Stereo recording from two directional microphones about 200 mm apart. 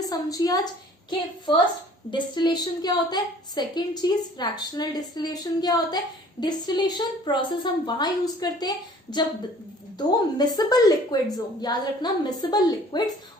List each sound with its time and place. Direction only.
0.0 s a woman's voice: 20° left (ahead or behind)
2.0 s a woman's voice: 20° left (ahead or behind)